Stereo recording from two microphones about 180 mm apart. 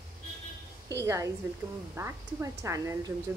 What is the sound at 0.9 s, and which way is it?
Speech, 15° right (ahead or behind).